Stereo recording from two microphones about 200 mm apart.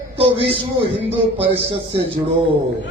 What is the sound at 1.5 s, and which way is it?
Speech, 25° right (ahead or behind).